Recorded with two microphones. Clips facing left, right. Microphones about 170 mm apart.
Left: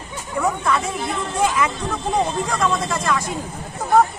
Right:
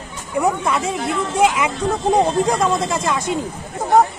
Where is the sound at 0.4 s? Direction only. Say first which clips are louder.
Right 2 dB; 20° right (ahead or behind).